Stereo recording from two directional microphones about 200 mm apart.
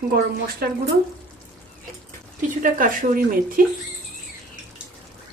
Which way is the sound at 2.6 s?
40° right (ahead or behind).